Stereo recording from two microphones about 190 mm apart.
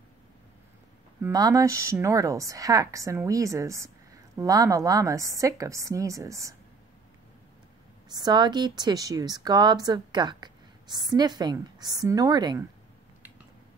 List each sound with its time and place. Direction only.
1.2 s a woman's voice: 15° right (ahead or behind)
8.1 s speech: 20° right (ahead or behind)